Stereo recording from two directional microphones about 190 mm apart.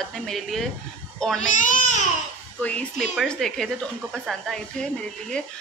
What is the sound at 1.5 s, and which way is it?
Speech, 45° left (ahead or behind).